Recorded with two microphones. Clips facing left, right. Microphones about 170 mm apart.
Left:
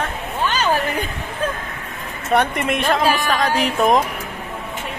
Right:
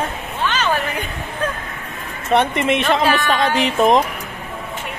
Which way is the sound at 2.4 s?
Centre (ahead or behind).